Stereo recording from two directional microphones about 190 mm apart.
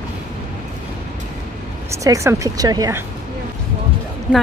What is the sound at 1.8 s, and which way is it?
Speech, 15° right (ahead or behind).